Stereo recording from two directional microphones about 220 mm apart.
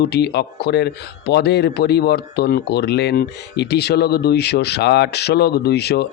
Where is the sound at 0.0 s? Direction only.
50° left (ahead or behind).